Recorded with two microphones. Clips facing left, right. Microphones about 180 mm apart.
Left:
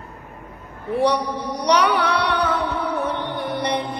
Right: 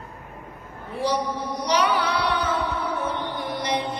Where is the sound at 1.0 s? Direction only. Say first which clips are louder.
Left 3 dB; 70° left (ahead or behind).